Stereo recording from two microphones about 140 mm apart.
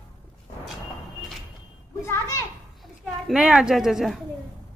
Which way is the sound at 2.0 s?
20° left (ahead or behind).